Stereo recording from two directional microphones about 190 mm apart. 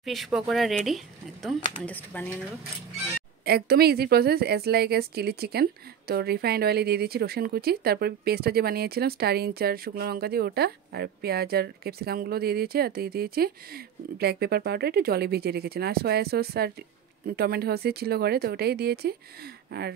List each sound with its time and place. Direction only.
0.0 s speech: centre (ahead or behind)
3.4 s a woman's voice: 55° right (ahead or behind)